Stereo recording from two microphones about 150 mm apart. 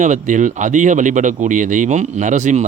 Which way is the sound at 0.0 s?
55° right (ahead or behind).